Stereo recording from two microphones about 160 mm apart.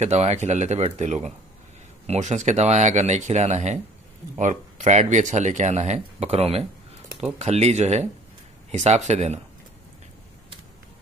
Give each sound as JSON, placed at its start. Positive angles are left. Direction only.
{"t": 0.0, "sound": "speech", "side_deg": -40}